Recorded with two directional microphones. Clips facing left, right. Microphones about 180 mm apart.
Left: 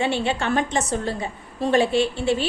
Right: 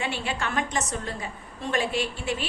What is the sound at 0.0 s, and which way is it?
A woman's voice, 30° left (ahead or behind).